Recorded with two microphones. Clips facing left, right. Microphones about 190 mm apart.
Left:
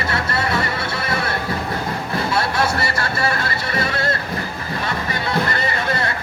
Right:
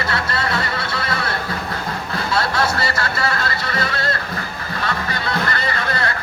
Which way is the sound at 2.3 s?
25° left (ahead or behind).